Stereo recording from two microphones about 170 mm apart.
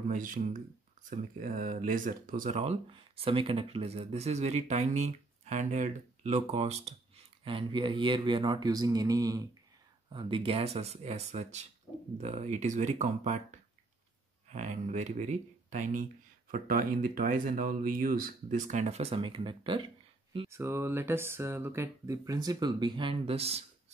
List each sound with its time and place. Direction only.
0.1 s speech: 50° right (ahead or behind)
11.9 s a sound: centre (ahead or behind)
12.2 s speech: 40° right (ahead or behind)
20.4 s speech: 15° right (ahead or behind); by 23.6 s 35° right (ahead or behind)